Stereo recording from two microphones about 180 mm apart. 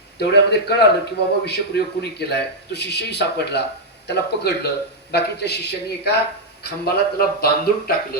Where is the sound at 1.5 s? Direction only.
65° left (ahead or behind).